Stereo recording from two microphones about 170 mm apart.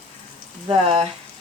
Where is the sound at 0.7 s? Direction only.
35° right (ahead or behind).